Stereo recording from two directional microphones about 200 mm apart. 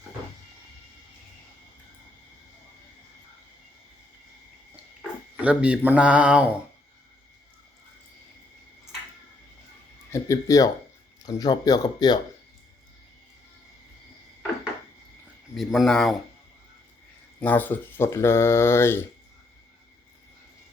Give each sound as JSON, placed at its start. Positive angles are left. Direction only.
{"t": 5.4, "sound": "speech", "side_deg": -5}
{"t": 10.1, "sound": "speech", "side_deg": 15}
{"t": 15.5, "sound": "speech", "side_deg": 0}
{"t": 17.4, "sound": "speech", "side_deg": 10}